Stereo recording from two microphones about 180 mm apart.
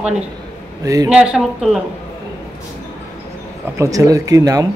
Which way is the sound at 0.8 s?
20° right (ahead or behind).